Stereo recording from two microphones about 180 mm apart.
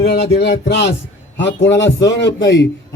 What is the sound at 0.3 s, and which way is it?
Speech, 65° left (ahead or behind).